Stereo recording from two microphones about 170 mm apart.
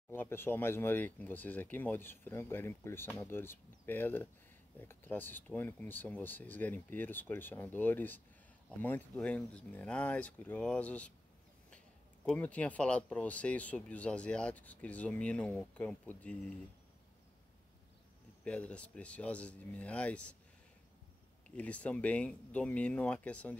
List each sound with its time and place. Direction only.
0.1 s speech: 15° left (ahead or behind)
12.3 s speech: 10° left (ahead or behind)
18.4 s speech: 5° left (ahead or behind)
21.5 s speech: 10° left (ahead or behind)